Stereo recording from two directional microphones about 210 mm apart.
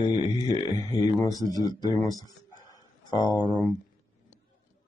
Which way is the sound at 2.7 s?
20° left (ahead or behind).